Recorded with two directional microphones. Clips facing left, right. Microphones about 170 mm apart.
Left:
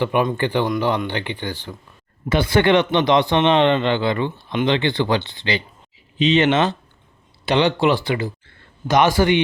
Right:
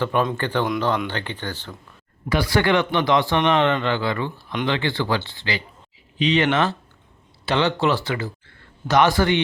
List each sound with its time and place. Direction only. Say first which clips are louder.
0.0 s speech: left 3 dB; 15° left (ahead or behind)